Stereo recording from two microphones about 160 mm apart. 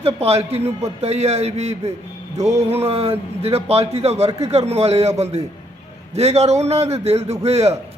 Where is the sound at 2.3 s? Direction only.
20° right (ahead or behind).